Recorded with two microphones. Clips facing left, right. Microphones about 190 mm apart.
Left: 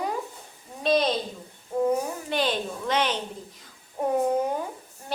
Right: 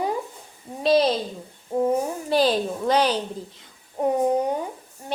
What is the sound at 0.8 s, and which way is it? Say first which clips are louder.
Speech: right 4 dB; 35° right (ahead or behind).